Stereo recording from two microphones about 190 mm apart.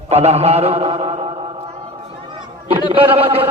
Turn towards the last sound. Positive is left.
turn(degrees=-30)  # may be behind; listen again after turning